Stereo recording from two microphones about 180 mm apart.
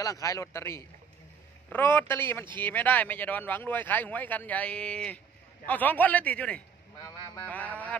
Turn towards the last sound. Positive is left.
turn(degrees=10)  # may be behind; listen again after turning